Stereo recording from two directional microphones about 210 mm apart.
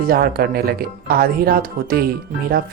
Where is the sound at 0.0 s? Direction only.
45° right (ahead or behind).